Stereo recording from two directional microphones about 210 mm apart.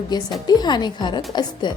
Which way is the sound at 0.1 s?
20° left (ahead or behind).